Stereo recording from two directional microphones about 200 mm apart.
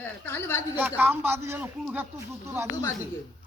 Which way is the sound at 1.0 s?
10° right (ahead or behind).